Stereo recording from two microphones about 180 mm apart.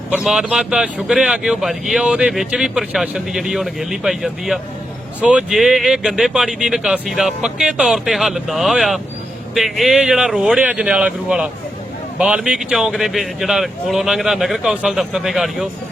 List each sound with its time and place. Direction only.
0.1 s speech: 5° right (ahead or behind)